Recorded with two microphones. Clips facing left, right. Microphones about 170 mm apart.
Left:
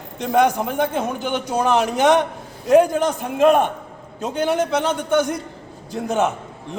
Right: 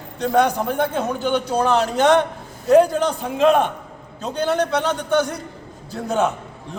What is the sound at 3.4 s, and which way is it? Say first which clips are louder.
Speech: left 1 dB; 50° left (ahead or behind).